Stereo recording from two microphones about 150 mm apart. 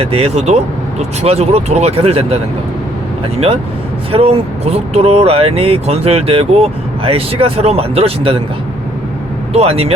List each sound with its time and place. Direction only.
0.0 s speech: 40° right (ahead or behind)
4.1 s speech: 40° right (ahead or behind)
9.5 s speech: 40° right (ahead or behind)